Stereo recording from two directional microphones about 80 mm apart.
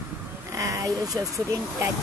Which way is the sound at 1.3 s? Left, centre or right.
Right.